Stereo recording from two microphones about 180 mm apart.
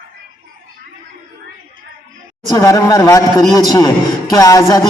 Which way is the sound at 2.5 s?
20° left (ahead or behind).